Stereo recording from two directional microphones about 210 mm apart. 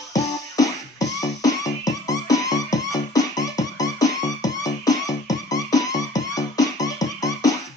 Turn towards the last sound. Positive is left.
turn(degrees=15)  # may be behind; listen again after turning